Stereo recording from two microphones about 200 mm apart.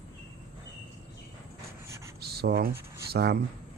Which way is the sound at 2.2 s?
55° right (ahead or behind).